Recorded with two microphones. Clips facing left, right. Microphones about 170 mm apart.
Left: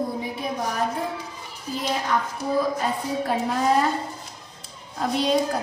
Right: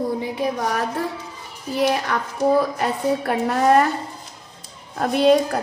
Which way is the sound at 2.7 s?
65° right (ahead or behind).